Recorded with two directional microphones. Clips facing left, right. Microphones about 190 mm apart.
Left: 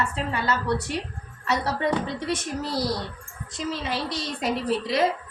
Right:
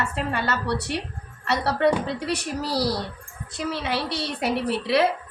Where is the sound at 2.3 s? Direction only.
70° right (ahead or behind).